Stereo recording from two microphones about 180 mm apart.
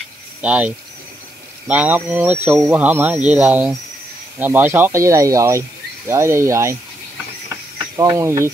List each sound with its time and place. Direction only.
0.4 s speech: 10° right (ahead or behind)
7.8 s speech: 20° right (ahead or behind)